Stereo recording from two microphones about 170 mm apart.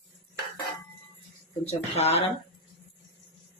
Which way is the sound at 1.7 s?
40° left (ahead or behind).